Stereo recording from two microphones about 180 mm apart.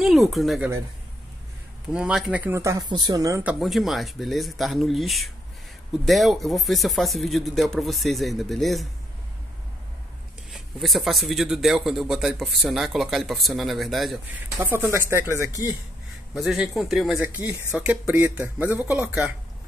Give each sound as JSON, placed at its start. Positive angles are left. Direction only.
{"t": 0.0, "sound": "a man's voice", "side_deg": 0}
{"t": 1.9, "sound": "speech", "side_deg": -5}
{"t": 3.5, "sound": "a man's voice", "side_deg": 0}
{"t": 10.5, "sound": "a man's voice", "side_deg": 0}
{"t": 14.6, "sound": "speech", "side_deg": -10}
{"t": 16.3, "sound": "a man's voice", "side_deg": 0}